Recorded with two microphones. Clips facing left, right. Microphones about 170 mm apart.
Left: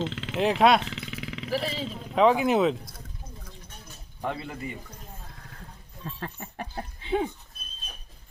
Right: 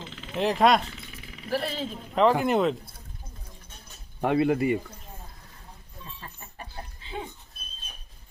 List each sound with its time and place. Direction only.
0.0 s a sound: 85° left
0.3 s speech: centre (ahead or behind)
0.9 s jackhammer: 90° left
1.5 s speech: centre (ahead or behind)
4.2 s speech: 65° right (ahead or behind)
6.1 s a sound: 65° left (ahead or behind)